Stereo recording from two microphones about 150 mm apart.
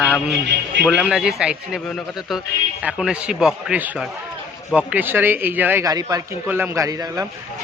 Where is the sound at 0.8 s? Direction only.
5° right (ahead or behind).